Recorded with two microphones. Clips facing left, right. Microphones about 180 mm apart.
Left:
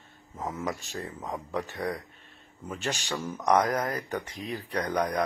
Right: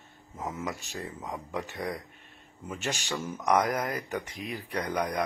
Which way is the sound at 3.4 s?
15° left (ahead or behind).